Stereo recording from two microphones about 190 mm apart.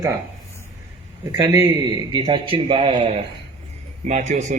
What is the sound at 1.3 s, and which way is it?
A man's voice, 20° right (ahead or behind).